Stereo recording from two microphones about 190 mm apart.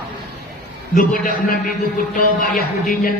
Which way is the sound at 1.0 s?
45° left (ahead or behind).